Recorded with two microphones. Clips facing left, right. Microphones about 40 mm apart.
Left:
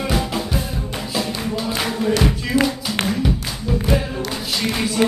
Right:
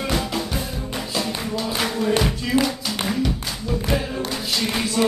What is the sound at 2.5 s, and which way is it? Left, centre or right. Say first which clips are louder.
Music: left 2 dB; right.